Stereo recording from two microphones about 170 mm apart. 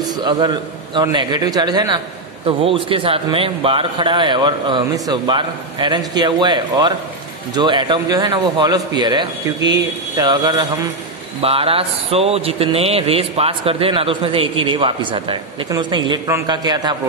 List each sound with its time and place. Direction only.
0.0 s a man's voice: 25° right (ahead or behind)